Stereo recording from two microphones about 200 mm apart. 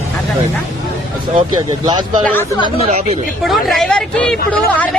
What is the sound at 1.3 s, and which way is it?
Speech, 20° right (ahead or behind).